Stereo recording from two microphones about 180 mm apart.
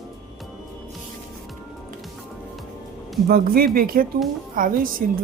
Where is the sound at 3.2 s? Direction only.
55° right (ahead or behind).